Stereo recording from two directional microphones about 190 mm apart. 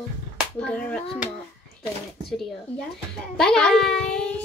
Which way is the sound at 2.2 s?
Centre (ahead or behind).